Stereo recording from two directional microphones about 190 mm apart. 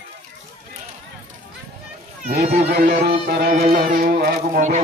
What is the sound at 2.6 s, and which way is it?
A man's voice, 55° right (ahead or behind).